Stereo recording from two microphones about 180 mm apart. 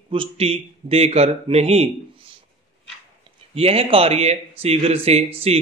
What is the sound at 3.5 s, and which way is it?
Speech, 35° right (ahead or behind).